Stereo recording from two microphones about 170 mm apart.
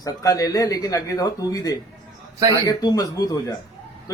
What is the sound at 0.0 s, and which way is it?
A man's voice, 20° left (ahead or behind).